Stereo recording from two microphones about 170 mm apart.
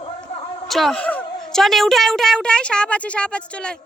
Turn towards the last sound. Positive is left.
turn(degrees=5)  # may be behind; listen again after turning